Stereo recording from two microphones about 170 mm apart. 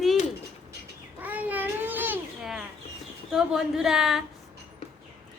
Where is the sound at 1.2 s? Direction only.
10° right (ahead or behind).